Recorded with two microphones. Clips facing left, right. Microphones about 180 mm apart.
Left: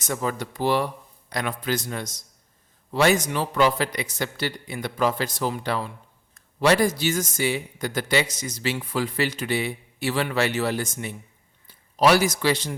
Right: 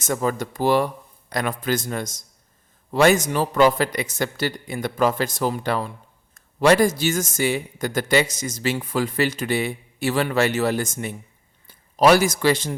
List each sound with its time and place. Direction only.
0.0 s a man's voice: 45° right (ahead or behind)